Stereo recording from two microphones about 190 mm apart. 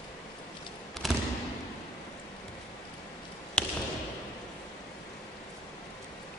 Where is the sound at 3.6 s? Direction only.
5° left (ahead or behind).